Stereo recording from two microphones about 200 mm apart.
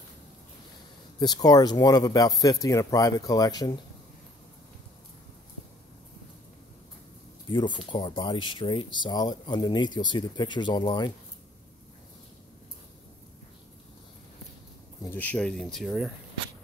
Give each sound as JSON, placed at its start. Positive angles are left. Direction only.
{"t": 1.2, "sound": "speech", "side_deg": 20}
{"t": 7.4, "sound": "speech", "side_deg": 20}
{"t": 15.0, "sound": "speech", "side_deg": 10}